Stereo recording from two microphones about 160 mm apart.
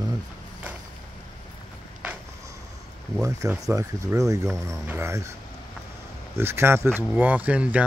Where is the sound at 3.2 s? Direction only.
20° right (ahead or behind).